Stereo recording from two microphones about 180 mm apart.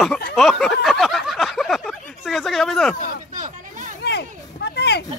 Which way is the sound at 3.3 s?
45° right (ahead or behind).